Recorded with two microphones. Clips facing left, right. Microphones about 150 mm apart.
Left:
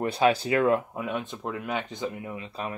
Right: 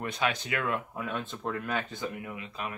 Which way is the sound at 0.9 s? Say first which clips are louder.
Left 4 dB; 20° left (ahead or behind).